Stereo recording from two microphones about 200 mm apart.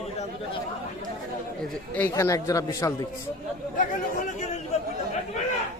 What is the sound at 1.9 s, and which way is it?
A man's voice, 10° left (ahead or behind).